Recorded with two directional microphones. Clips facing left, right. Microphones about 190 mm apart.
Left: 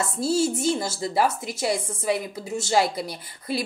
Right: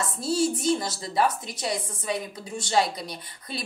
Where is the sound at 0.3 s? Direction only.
30° left (ahead or behind).